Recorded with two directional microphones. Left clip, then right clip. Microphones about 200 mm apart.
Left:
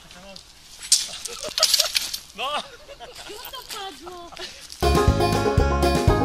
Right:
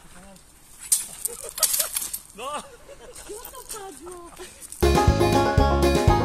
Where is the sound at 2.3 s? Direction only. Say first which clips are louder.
Left 5 dB; 25° left (ahead or behind).